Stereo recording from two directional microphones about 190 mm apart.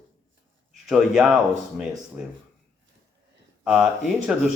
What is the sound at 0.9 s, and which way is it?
A man's voice, 5° right (ahead or behind).